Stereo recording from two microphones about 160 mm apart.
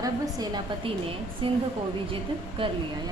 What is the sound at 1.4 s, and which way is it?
Speech, 35° right (ahead or behind).